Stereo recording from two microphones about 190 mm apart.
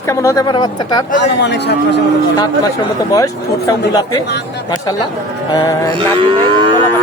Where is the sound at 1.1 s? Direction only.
65° left (ahead or behind).